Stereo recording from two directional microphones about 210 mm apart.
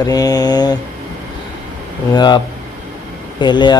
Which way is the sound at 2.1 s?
20° left (ahead or behind).